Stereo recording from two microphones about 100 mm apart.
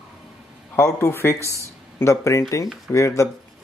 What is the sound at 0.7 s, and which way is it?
Speech, 30° left (ahead or behind).